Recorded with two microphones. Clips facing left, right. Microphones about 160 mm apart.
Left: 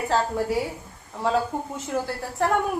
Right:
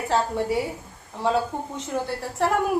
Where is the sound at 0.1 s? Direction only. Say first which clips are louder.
Right 1 dB; centre (ahead or behind).